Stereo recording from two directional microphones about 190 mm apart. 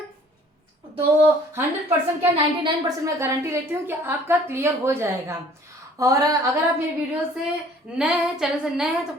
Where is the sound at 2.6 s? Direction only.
15° right (ahead or behind).